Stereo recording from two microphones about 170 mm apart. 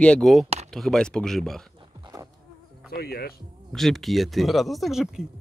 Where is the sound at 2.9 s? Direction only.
65° left (ahead or behind).